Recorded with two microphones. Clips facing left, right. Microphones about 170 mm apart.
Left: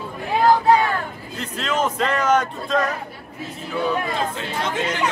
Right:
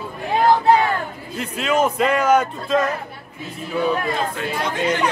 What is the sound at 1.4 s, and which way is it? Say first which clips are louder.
A man's voice: right 4 dB; 10° right (ahead or behind).